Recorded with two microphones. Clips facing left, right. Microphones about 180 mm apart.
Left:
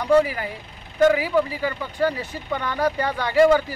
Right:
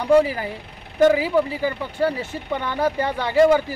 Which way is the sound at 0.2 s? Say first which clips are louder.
Right 2 dB; 30° right (ahead or behind).